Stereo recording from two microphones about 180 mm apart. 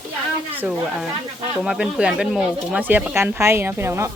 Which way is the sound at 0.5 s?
5° right (ahead or behind).